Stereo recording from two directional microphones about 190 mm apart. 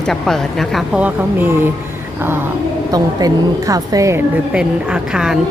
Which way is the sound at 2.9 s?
20° right (ahead or behind).